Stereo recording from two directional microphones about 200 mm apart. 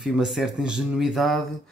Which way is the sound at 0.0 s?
Centre (ahead or behind).